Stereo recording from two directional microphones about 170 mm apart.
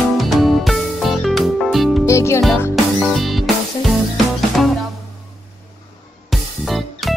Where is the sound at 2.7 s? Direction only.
Centre (ahead or behind).